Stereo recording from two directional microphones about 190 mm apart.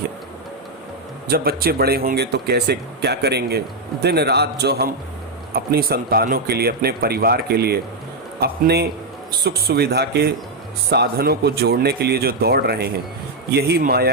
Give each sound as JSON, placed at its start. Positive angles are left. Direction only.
{"t": 1.3, "sound": "speech", "side_deg": -55}